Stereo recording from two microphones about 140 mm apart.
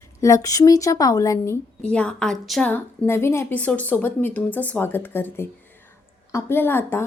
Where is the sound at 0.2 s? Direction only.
25° left (ahead or behind).